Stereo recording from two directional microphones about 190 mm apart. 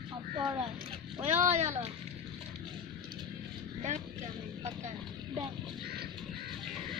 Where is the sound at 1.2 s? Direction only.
35° right (ahead or behind).